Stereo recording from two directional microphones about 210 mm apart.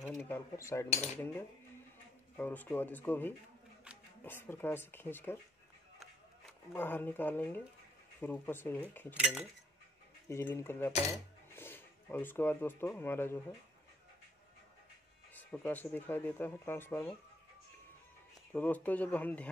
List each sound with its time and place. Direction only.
0.0 s speech: 5° left (ahead or behind)
0.8 s cutlery: 30° left (ahead or behind)
2.3 s speech: 10° left (ahead or behind)
5.9 s a sound: 5° left (ahead or behind)
8.2 s speech: 10° left (ahead or behind)
9.1 s speech: 5° right (ahead or behind)
10.3 s speech: 10° left (ahead or behind)
15.3 s speech: 10° left (ahead or behind)
18.5 s speech: 5° left (ahead or behind)